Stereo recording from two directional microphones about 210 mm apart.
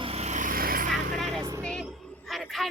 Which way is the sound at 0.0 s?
30° right (ahead or behind).